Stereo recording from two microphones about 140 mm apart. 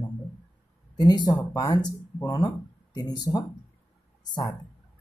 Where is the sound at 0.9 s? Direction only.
30° left (ahead or behind).